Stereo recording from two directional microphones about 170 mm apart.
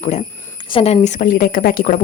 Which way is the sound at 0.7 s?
30° left (ahead or behind).